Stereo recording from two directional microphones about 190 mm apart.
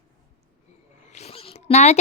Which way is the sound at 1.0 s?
35° left (ahead or behind).